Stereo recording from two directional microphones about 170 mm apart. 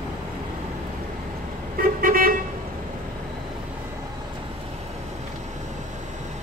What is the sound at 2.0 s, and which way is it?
Vehicle, 55° right (ahead or behind).